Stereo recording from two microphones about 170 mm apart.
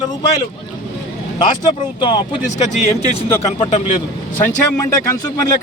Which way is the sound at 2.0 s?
30° left (ahead or behind).